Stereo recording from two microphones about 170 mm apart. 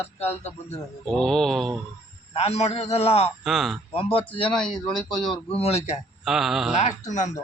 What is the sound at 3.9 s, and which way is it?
Speech, 35° left (ahead or behind).